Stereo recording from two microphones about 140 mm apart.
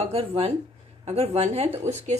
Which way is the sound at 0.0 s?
45° right (ahead or behind).